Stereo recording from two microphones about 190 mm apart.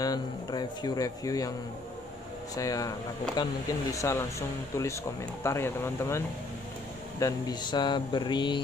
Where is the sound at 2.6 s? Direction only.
20° left (ahead or behind).